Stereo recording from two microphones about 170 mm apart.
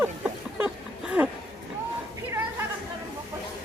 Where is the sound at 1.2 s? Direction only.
10° right (ahead or behind).